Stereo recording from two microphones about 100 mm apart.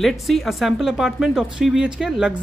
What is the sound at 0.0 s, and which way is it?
Speech, centre (ahead or behind).